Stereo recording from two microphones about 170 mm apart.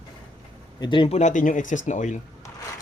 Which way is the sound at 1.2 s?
45° left (ahead or behind).